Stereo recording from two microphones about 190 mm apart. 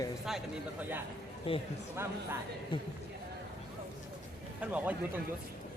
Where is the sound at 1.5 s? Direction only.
30° left (ahead or behind).